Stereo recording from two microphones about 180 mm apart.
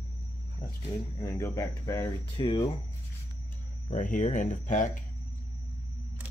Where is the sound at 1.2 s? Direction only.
15° left (ahead or behind).